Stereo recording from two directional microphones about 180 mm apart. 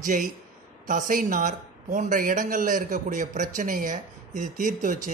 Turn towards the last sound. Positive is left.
turn(degrees=-45)  # may be behind; listen again after turning